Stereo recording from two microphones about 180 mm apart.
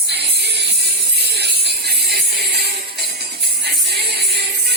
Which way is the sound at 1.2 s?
65° right (ahead or behind).